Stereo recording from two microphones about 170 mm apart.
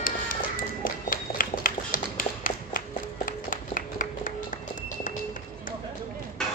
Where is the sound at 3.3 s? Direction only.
55° left (ahead or behind).